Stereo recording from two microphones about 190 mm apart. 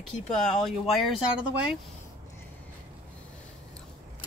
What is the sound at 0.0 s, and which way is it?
Speech, 5° left (ahead or behind).